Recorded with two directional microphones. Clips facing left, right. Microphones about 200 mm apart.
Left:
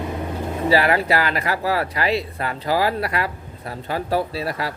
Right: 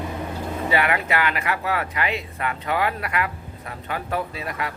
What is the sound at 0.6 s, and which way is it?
Speech, 35° left (ahead or behind).